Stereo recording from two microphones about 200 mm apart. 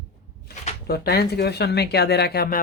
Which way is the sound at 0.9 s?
55° left (ahead or behind).